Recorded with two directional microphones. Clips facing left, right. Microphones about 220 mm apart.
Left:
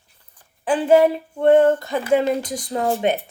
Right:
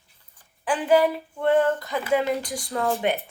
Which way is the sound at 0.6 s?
25° left (ahead or behind).